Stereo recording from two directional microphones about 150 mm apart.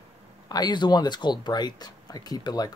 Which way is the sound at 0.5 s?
30° left (ahead or behind).